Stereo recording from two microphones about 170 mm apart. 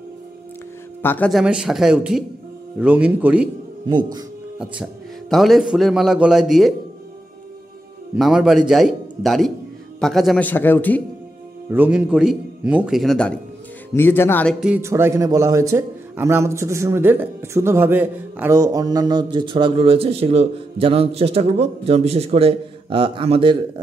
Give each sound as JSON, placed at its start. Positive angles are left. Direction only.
{"t": 1.0, "sound": "a man's voice", "side_deg": 10}
{"t": 1.3, "sound": "a man's voice", "side_deg": -5}
{"t": 5.3, "sound": "a man's voice", "side_deg": 0}
{"t": 8.2, "sound": "a man's voice", "side_deg": -5}
{"t": 11.7, "sound": "a man's voice", "side_deg": -10}
{"t": 13.9, "sound": "a man's voice", "side_deg": 15}
{"t": 14.5, "sound": "a man's voice", "side_deg": -5}
{"t": 14.8, "sound": "a man's voice", "side_deg": -15}